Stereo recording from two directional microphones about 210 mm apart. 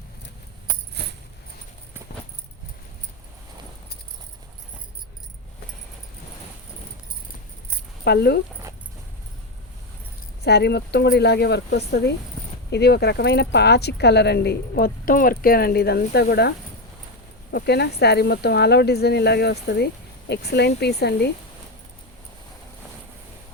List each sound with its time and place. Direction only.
1.0 s a sound: 50° right (ahead or behind)
8.0 s speech: 50° left (ahead or behind)
10.4 s speech: 50° left (ahead or behind)